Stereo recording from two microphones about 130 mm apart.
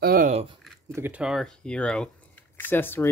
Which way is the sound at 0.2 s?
55° right (ahead or behind).